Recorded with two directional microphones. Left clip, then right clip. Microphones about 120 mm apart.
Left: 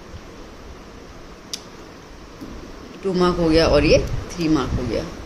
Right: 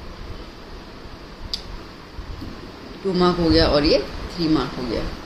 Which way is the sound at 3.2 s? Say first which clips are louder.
Left 1 dB; 55° left (ahead or behind).